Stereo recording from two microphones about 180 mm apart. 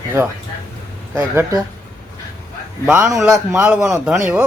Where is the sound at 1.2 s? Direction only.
20° right (ahead or behind).